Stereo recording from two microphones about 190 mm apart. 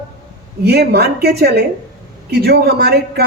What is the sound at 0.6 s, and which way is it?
Speech, 55° right (ahead or behind).